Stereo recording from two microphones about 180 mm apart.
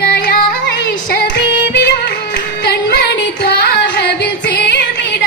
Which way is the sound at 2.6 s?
65° left (ahead or behind).